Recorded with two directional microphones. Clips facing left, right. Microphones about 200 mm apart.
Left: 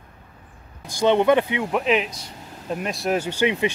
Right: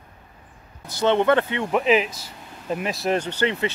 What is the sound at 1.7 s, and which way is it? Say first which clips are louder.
Speech: right 3 dB; centre (ahead or behind).